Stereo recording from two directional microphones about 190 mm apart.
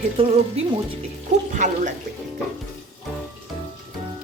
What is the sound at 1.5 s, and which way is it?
Speech, 40° right (ahead or behind).